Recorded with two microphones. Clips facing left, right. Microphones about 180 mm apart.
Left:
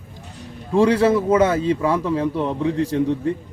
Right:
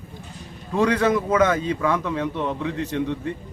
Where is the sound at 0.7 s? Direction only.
30° left (ahead or behind).